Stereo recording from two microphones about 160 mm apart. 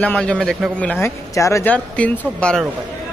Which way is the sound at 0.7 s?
10° left (ahead or behind).